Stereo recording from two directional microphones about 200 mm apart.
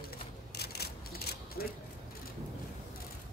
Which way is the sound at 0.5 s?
50° left (ahead or behind).